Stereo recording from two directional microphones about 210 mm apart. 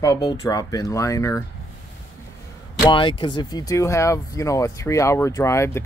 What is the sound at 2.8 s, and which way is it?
Speech, 25° left (ahead or behind).